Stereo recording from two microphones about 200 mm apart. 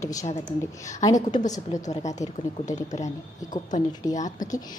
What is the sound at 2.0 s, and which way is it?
Speech, 35° left (ahead or behind).